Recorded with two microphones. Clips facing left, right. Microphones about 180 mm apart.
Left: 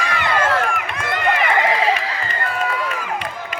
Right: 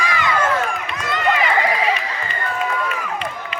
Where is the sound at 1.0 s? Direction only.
55° left (ahead or behind).